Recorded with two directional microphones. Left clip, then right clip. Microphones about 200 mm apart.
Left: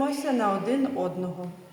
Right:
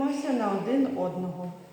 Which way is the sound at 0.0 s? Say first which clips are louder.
Left 2 dB; 15° left (ahead or behind).